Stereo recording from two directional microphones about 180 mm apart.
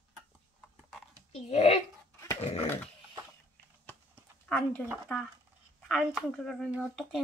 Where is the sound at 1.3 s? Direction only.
35° left (ahead or behind).